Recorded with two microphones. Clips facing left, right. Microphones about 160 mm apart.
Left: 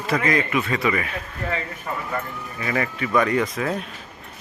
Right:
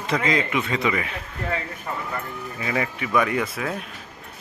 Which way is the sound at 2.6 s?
15° right (ahead or behind).